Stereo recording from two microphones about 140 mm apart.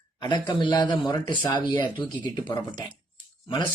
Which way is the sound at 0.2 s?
30° left (ahead or behind).